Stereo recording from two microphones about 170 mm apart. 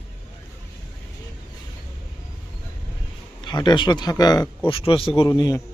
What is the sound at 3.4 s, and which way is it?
Speech, 25° left (ahead or behind).